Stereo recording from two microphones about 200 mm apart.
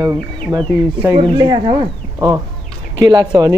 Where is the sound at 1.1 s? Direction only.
25° right (ahead or behind).